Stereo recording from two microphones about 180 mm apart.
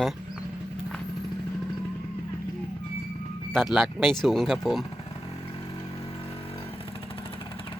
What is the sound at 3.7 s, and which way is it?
Speech, centre (ahead or behind).